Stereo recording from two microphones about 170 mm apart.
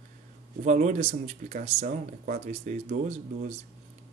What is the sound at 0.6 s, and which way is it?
Speech, 45° right (ahead or behind).